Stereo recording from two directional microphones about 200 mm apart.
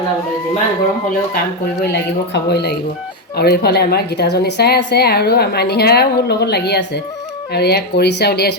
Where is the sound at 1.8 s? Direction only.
55° left (ahead or behind).